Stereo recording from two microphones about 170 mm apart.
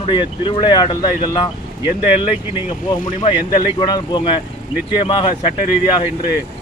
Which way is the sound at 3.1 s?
30° left (ahead or behind).